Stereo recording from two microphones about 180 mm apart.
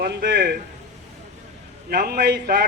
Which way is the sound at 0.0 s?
65° right (ahead or behind).